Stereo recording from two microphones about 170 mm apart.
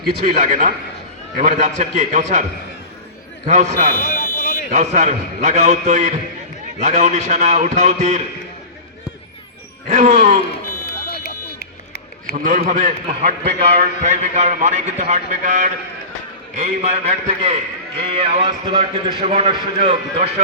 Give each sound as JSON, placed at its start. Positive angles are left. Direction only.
{"t": 0.0, "sound": "a man's voice", "side_deg": -60}
{"t": 3.5, "sound": "a man's voice", "side_deg": -45}
{"t": 4.1, "sound": "a sound", "side_deg": 60}
{"t": 4.7, "sound": "a man's voice", "side_deg": -45}
{"t": 9.9, "sound": "a man's voice", "side_deg": -45}
{"t": 11.1, "sound": "a sound", "side_deg": 65}
{"t": 12.3, "sound": "a man's voice", "side_deg": -55}